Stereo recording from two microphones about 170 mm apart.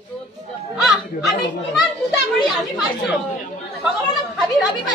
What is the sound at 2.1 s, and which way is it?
A woman's voice, centre (ahead or behind).